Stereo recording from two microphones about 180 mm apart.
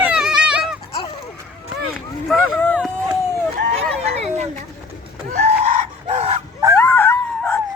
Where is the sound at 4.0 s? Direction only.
35° right (ahead or behind).